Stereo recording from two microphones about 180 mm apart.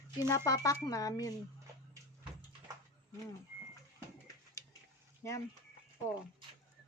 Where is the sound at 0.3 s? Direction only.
15° left (ahead or behind).